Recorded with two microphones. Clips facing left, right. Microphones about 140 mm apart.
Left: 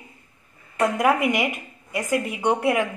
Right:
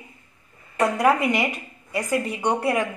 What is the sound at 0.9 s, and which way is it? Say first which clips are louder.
Speech: right 1 dB; 10° left (ahead or behind).